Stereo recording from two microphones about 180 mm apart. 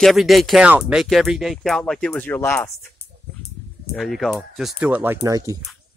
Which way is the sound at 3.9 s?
Centre (ahead or behind).